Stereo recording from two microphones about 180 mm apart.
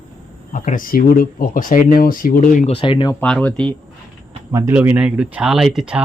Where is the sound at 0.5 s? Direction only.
45° left (ahead or behind).